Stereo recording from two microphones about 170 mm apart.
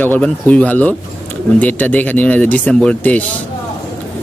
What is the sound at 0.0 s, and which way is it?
Speech, 10° left (ahead or behind).